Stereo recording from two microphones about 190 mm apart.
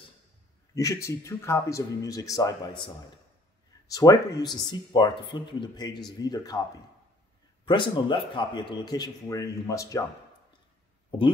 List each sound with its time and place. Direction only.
0.7 s speech: 15° left (ahead or behind)
3.9 s speech: 20° left (ahead or behind)
7.6 s speech: 25° left (ahead or behind)